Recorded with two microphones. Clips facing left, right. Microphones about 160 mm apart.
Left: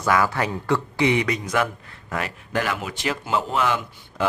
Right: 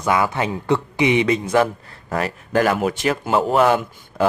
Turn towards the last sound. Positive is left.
turn(degrees=-45)  # may be behind; listen again after turning